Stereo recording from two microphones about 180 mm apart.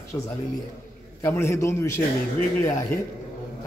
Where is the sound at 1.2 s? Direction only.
15° left (ahead or behind).